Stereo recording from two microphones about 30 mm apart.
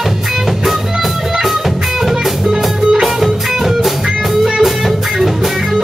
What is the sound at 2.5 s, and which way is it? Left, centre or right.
Music, centre.